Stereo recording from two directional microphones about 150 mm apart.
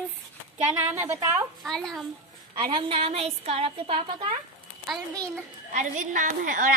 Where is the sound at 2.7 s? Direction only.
40° right (ahead or behind).